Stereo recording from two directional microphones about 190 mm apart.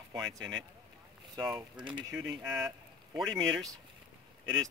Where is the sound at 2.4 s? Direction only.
5° right (ahead or behind).